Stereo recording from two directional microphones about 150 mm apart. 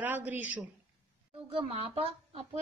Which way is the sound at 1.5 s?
40° right (ahead or behind).